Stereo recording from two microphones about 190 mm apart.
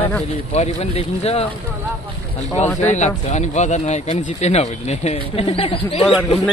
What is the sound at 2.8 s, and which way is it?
Speech, 40° left (ahead or behind).